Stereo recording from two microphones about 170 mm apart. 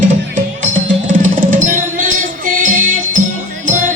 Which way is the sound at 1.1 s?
50° right (ahead or behind).